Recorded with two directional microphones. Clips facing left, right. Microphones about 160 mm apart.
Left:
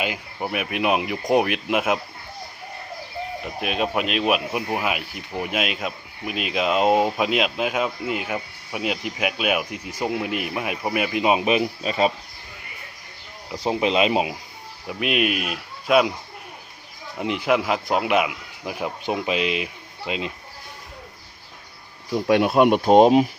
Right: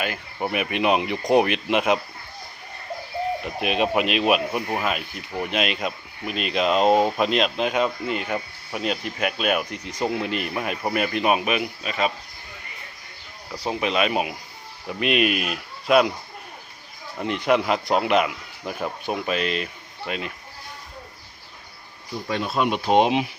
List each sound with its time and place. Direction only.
0.3 s speech: centre (ahead or behind)
3.4 s speech: centre (ahead or behind); by 12.1 s 35° left (ahead or behind)
13.5 s speech: 20° left (ahead or behind)
14.8 s speech: centre (ahead or behind)
17.2 s speech: 10° left (ahead or behind)
22.3 s speech: 60° left (ahead or behind); by 23.3 s 40° left (ahead or behind)